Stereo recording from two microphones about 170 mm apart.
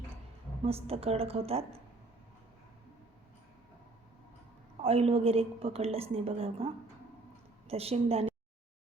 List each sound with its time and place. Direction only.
0.6 s a woman's voice: 35° right (ahead or behind)
4.8 s a woman's voice: 35° right (ahead or behind)
7.7 s a woman's voice: 35° right (ahead or behind)